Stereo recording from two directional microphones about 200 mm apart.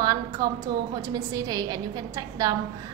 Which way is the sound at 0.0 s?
20° right (ahead or behind).